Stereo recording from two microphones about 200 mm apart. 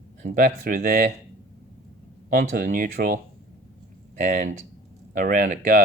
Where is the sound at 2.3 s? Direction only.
45° right (ahead or behind).